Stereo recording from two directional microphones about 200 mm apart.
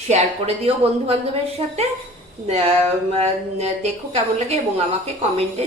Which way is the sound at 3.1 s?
30° right (ahead or behind).